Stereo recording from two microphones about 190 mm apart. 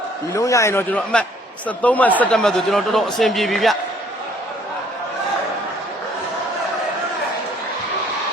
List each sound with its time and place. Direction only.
0.3 s a man's voice: 15° left (ahead or behind); by 3.8 s centre (ahead or behind)